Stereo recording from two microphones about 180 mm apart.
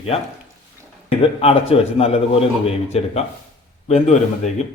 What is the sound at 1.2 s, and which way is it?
A man's voice, 30° left (ahead or behind).